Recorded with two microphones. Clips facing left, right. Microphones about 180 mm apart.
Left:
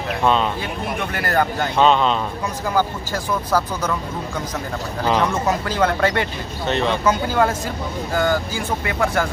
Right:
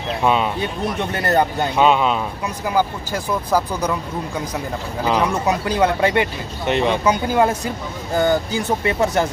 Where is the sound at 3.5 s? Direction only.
15° right (ahead or behind).